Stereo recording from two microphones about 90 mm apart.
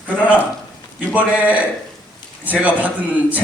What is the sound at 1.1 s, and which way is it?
A man's voice, 15° right (ahead or behind).